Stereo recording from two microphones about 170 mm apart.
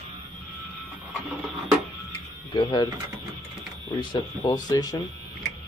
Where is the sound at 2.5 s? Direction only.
25° left (ahead or behind).